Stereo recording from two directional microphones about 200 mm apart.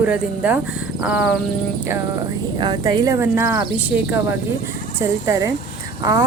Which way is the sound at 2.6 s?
20° right (ahead or behind).